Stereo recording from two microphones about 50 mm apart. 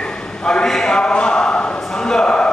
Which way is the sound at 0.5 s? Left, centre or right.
Centre.